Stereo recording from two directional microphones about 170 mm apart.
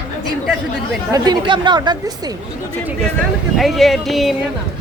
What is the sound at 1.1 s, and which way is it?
Speech, 25° right (ahead or behind).